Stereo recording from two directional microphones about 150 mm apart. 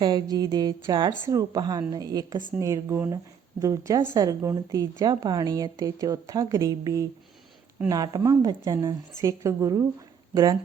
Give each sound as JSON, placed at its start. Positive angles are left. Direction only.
{"t": 0.0, "sound": "a woman's voice", "side_deg": -30}